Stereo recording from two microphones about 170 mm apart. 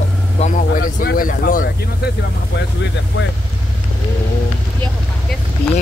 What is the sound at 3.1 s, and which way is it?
Speech, 90° left.